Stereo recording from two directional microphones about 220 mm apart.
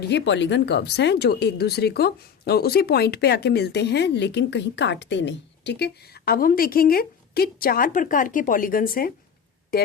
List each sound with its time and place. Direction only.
0.0 s speech: 50° left (ahead or behind)